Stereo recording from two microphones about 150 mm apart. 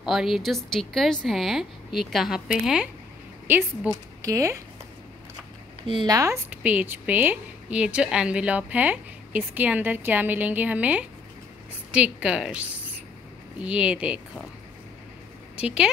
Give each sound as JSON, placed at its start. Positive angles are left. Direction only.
{"t": 0.0, "sound": "a woman's voice", "side_deg": -5}
{"t": 5.9, "sound": "speech", "side_deg": -30}
{"t": 15.5, "sound": "speech", "side_deg": -5}